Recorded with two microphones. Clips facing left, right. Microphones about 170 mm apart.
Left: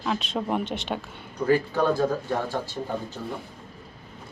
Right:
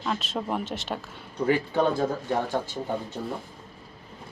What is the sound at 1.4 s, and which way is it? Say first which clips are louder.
Speech: left 1 dB; 20° right (ahead or behind).